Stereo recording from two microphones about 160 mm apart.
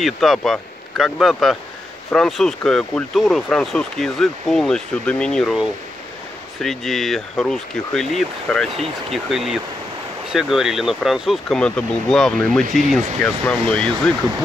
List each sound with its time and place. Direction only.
0.0 s speech: centre (ahead or behind)